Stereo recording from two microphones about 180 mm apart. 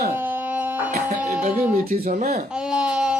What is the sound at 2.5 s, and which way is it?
Baby cry, 5° right (ahead or behind).